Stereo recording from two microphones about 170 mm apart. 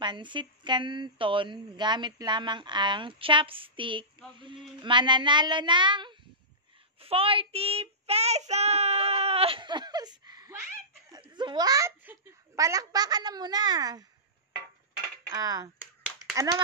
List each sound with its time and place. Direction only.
0.0 s a woman's voice: 25° right (ahead or behind)
7.0 s child singing: 35° right (ahead or behind)
11.1 s a sound: 25° right (ahead or behind)
12.0 s a woman's voice: 15° right (ahead or behind)
15.2 s dishes: 20° right (ahead or behind)